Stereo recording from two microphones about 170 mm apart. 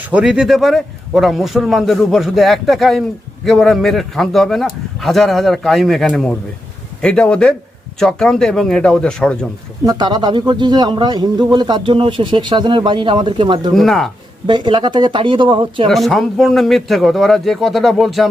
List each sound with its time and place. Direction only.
0.0 s speech: 5° right (ahead or behind)
9.8 s a man's voice: 25° right (ahead or behind)
13.7 s speech: centre (ahead or behind)
14.4 s a man's voice: 25° right (ahead or behind)
15.9 s speech: centre (ahead or behind)